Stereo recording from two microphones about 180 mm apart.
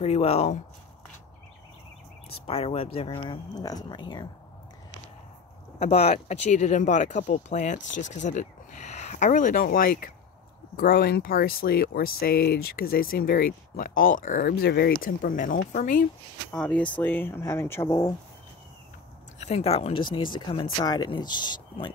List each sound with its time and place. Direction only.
0.0 s speech: 35° left (ahead or behind)
2.3 s speech: 30° left (ahead or behind)
5.8 s speech: 35° left (ahead or behind)
16.5 s speech: 5° left (ahead or behind)
19.4 s speech: 35° left (ahead or behind)